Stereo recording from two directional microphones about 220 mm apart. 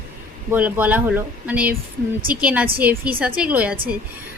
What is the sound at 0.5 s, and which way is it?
A woman's voice, 5° right (ahead or behind).